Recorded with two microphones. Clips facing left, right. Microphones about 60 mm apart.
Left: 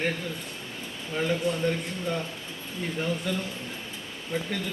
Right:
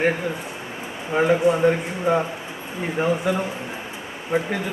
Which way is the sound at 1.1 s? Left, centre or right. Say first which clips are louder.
Right 9 dB; right.